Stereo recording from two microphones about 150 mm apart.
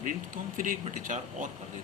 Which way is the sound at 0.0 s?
60° right (ahead or behind).